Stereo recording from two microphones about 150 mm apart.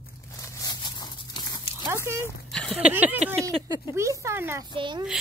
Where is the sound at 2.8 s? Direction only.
10° right (ahead or behind).